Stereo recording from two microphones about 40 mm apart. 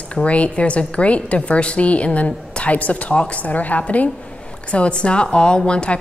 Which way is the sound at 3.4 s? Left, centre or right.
Left.